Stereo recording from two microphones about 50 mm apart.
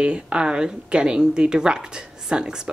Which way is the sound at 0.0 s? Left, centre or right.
Centre.